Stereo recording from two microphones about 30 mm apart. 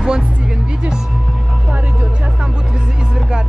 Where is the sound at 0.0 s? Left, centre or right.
Right.